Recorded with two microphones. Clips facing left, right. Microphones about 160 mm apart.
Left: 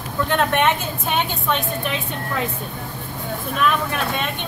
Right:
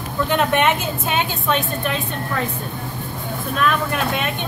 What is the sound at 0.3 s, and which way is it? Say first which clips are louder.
A woman's voice: right 1 dB; 5° right (ahead or behind).